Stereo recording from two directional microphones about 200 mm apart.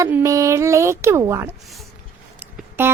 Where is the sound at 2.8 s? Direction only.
10° right (ahead or behind).